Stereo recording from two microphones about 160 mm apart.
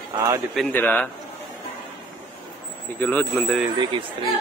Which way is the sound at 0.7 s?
10° left (ahead or behind).